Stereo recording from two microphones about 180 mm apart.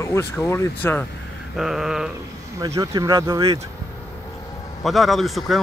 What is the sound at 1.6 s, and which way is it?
Speech, centre (ahead or behind).